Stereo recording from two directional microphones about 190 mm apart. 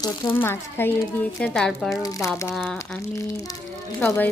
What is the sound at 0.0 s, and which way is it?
Speech, 10° left (ahead or behind).